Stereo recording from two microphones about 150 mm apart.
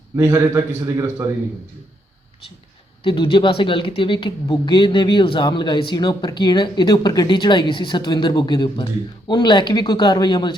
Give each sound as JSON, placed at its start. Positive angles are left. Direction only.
{"t": 0.2, "sound": "a man's voice", "side_deg": -20}
{"t": 3.0, "sound": "speech", "side_deg": 35}